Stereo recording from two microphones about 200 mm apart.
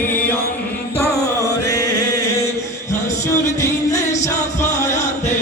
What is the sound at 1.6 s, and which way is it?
Chant, 15° left (ahead or behind).